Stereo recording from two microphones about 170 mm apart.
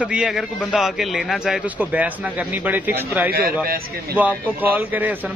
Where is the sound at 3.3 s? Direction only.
60° right (ahead or behind).